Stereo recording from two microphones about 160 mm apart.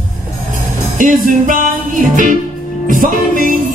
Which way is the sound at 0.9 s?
55° right (ahead or behind).